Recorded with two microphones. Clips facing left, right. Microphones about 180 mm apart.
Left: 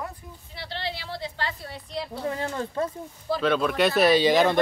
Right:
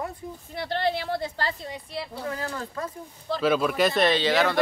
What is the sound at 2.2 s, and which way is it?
Speech, 25° left (ahead or behind).